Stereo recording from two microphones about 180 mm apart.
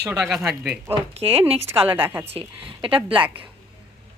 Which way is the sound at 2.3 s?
30° right (ahead or behind).